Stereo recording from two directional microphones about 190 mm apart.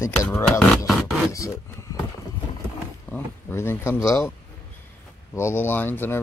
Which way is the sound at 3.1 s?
10° left (ahead or behind).